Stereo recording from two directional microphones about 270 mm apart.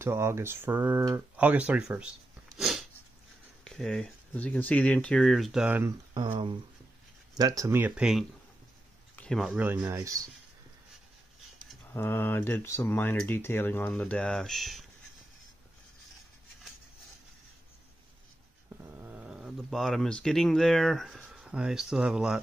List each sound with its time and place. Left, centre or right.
0.0 s speech: centre
11.6 s speech: centre
18.8 s speech: centre